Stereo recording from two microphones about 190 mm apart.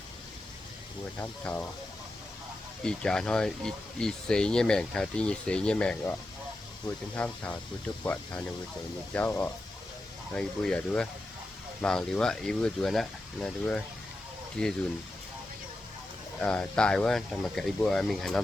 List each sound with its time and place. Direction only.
1.2 s speech: 10° left (ahead or behind)
2.8 s speech: 5° left (ahead or behind)
7.2 s speech: 5° left (ahead or behind)
16.4 s speech: 5° left (ahead or behind)